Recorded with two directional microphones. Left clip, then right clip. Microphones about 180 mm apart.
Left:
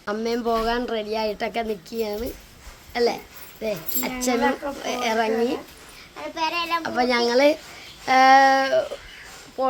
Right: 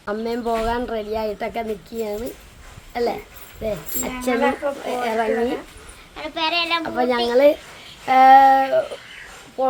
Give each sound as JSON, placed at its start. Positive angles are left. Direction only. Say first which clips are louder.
{"t": 0.0, "sound": "a woman's voice", "louder": "even", "side_deg": 0}
{"t": 6.3, "sound": "speech", "louder": "right 4 dB", "side_deg": -45}
{"t": 6.8, "sound": "a woman's voice", "louder": "right 1 dB", "side_deg": 0}